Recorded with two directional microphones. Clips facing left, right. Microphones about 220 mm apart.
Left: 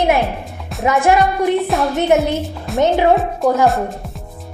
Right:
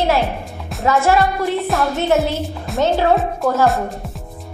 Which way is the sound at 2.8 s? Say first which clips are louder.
Left 2 dB; 15° left (ahead or behind).